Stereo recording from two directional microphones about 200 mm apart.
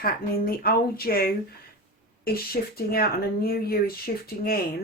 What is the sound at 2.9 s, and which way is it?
Speech, 50° left (ahead or behind).